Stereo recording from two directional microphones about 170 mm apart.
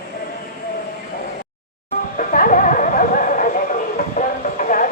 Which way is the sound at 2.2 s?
55° left (ahead or behind).